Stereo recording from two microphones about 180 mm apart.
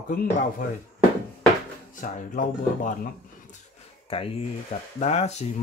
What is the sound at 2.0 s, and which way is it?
Speech, 50° left (ahead or behind).